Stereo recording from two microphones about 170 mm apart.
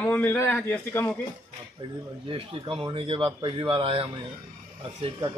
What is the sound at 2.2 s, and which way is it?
Speech, 30° right (ahead or behind).